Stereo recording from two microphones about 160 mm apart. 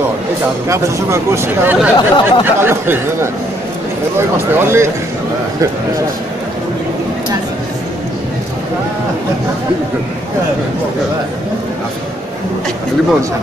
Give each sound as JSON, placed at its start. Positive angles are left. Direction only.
{"t": 0.7, "sound": "speech", "side_deg": -15}
{"t": 2.0, "sound": "speech", "side_deg": 30}
{"t": 2.4, "sound": "speech", "side_deg": -15}
{"t": 4.6, "sound": "speech", "side_deg": -15}